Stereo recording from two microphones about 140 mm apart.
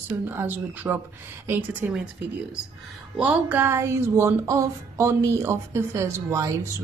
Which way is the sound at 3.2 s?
10° right (ahead or behind).